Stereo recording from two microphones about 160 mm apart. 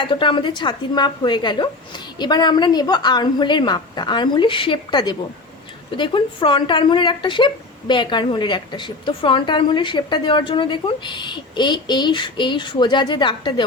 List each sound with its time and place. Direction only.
0.0 s a woman's voice: 30° left (ahead or behind)